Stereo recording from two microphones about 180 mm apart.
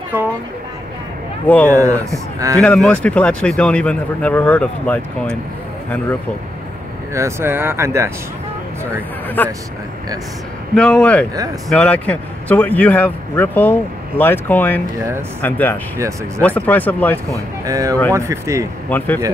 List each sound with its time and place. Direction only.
0.1 s speech: 10° right (ahead or behind)
1.7 s speech: 15° right (ahead or behind)
2.6 s a man's voice: 5° left (ahead or behind)
7.2 s speech: 15° right (ahead or behind)
9.4 s a man's voice: 10° left (ahead or behind)
10.7 s a man's voice: 5° left (ahead or behind)
17.3 s speech: 20° right (ahead or behind)
18.9 s a man's voice: 10° left (ahead or behind)